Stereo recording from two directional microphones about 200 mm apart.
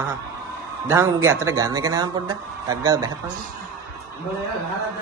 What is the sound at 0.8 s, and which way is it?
Speech, 15° right (ahead or behind).